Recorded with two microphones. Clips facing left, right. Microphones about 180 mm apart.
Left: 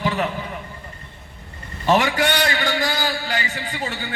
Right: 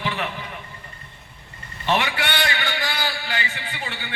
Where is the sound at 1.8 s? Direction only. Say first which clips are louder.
Left 5 dB; 40° left (ahead or behind).